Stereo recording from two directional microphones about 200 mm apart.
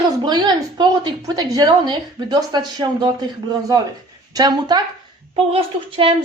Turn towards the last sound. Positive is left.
turn(degrees=-30)  # may be behind; listen again after turning